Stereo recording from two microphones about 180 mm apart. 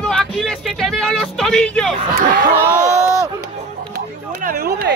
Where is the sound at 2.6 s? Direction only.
15° right (ahead or behind).